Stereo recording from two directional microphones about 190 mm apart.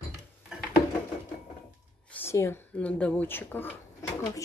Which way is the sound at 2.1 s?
10° left (ahead or behind).